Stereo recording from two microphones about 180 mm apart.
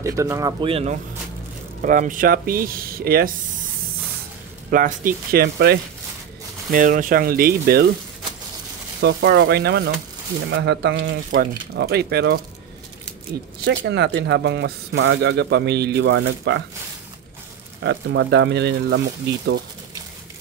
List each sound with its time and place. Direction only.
0.0 s speech: 15° right (ahead or behind); by 0.9 s 30° right (ahead or behind)
1.8 s speech: 45° right (ahead or behind)
4.6 s speech: 50° right (ahead or behind)
6.7 s speech: 45° right (ahead or behind)
9.0 s speech: 70° right (ahead or behind); by 16.6 s 85° right
17.8 s speech: 75° right (ahead or behind)